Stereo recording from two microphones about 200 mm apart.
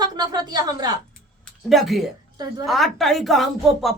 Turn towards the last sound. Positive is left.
turn(degrees=0)  # may be behind; listen again after turning